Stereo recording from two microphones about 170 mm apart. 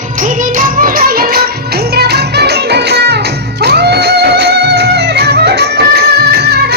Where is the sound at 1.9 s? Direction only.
70° right (ahead or behind).